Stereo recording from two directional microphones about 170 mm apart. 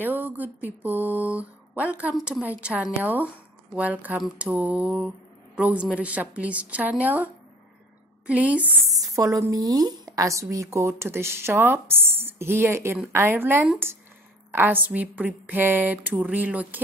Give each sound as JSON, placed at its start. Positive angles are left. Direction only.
{"t": 0.0, "sound": "speech", "side_deg": -10}
{"t": 8.3, "sound": "speech", "side_deg": -5}
{"t": 8.9, "sound": "speech", "side_deg": -20}